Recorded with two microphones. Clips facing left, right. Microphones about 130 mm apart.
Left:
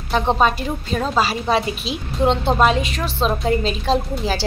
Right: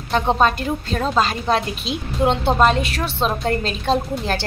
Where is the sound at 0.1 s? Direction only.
5° left (ahead or behind).